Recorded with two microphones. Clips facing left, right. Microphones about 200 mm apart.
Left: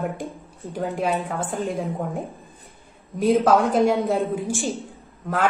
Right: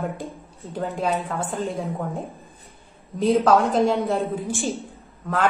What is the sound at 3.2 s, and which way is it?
Speech, centre (ahead or behind).